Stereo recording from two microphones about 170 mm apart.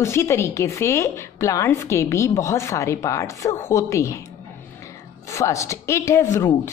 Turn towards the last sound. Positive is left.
turn(degrees=15)  # may be behind; listen again after turning